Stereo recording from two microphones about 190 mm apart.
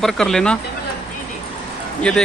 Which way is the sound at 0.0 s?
5° left (ahead or behind).